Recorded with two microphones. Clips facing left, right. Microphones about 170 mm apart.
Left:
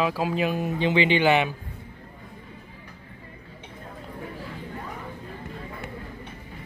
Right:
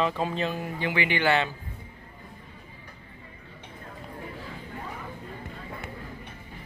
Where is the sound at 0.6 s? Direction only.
20° left (ahead or behind).